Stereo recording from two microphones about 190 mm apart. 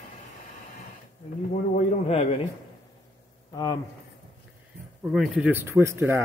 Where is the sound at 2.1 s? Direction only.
35° left (ahead or behind).